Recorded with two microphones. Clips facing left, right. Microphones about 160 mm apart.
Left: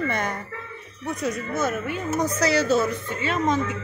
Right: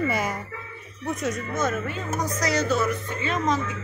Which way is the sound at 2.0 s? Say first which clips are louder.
Left 6 dB; 30° left (ahead or behind).